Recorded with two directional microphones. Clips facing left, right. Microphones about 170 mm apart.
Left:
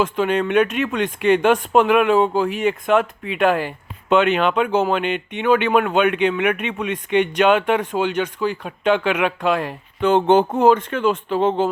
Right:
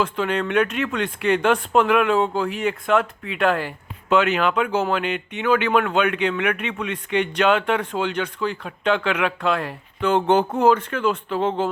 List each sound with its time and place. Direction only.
0.0 s speech: 20° left (ahead or behind)